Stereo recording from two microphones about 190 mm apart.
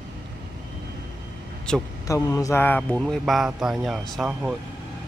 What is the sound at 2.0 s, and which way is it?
Speech, 15° left (ahead or behind).